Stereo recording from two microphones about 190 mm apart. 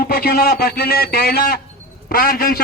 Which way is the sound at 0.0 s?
55° left (ahead or behind).